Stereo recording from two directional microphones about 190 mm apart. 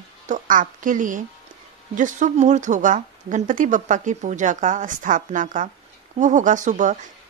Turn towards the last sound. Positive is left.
turn(degrees=-40)  # may be behind; listen again after turning